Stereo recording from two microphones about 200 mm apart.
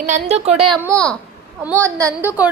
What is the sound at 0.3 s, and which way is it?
Speech, 30° right (ahead or behind).